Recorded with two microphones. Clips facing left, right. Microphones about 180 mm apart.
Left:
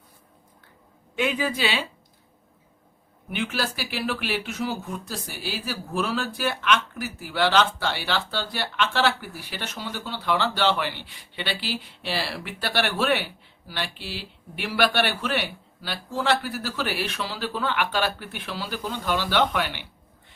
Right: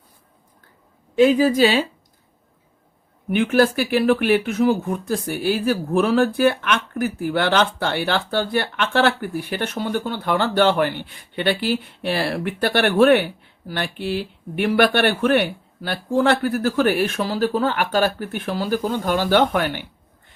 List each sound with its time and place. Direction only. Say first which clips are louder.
1.1 s speech: right 11 dB; 35° right (ahead or behind)
3.2 s speech: right 12 dB; 55° right (ahead or behind)